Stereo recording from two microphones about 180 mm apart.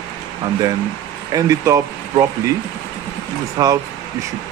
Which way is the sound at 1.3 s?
20° right (ahead or behind).